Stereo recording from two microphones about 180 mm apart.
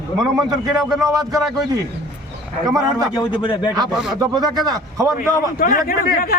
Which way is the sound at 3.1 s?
25° left (ahead or behind).